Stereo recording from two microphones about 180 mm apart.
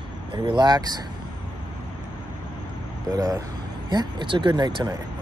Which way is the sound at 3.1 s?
20° right (ahead or behind).